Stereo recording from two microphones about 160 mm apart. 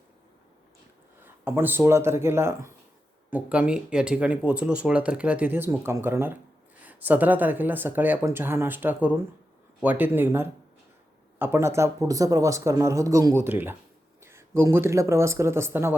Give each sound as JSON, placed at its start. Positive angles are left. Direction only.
{"t": 1.2, "sound": "speech", "side_deg": -15}